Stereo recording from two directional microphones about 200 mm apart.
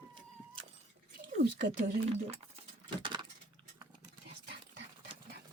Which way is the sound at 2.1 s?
30° right (ahead or behind).